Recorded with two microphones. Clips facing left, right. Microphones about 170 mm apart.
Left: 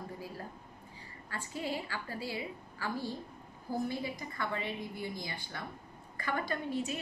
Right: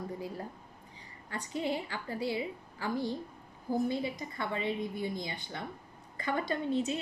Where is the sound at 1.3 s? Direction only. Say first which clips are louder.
Right 4 dB; 20° right (ahead or behind).